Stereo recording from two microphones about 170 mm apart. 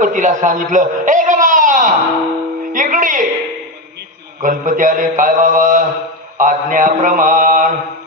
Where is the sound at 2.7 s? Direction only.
50° right (ahead or behind).